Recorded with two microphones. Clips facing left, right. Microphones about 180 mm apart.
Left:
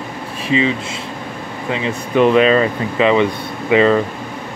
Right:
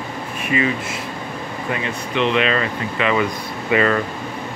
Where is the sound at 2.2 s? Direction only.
45° left (ahead or behind).